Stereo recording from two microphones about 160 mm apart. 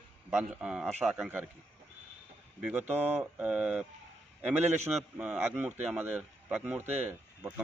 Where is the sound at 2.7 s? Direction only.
10° right (ahead or behind).